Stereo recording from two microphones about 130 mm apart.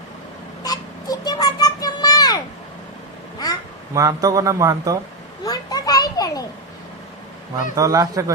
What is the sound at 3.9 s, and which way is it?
A man's voice, 25° right (ahead or behind).